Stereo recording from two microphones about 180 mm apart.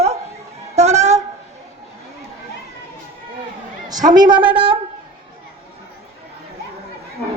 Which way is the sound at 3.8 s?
20° right (ahead or behind).